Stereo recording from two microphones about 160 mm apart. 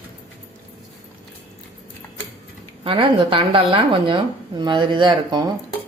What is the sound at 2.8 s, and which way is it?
Speech, 35° right (ahead or behind).